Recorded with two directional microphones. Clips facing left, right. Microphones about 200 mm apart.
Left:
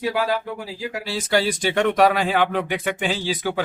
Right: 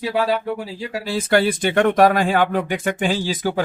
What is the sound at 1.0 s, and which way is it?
Speech, 55° right (ahead or behind).